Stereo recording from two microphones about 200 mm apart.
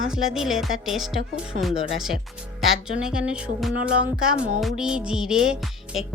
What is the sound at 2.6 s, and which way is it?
Speech, 5° right (ahead or behind).